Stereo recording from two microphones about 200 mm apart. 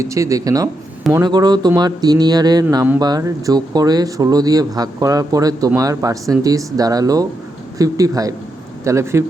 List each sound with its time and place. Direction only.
0.0 s a man's voice: 15° right (ahead or behind)